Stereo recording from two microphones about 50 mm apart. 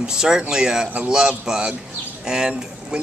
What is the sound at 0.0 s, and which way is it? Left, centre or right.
A man's voice, centre.